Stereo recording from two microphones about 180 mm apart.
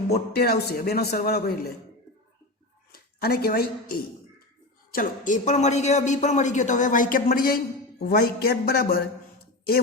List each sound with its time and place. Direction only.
0.3 s a man's voice: 60° left (ahead or behind)
2.9 s a man's voice: 60° left (ahead or behind)